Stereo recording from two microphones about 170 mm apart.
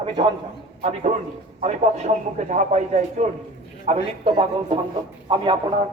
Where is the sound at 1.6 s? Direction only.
45° right (ahead or behind).